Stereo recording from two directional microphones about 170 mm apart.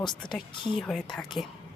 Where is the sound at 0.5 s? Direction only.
30° left (ahead or behind).